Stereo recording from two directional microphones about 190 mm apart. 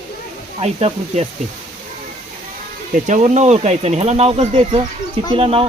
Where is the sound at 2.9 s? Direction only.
40° right (ahead or behind).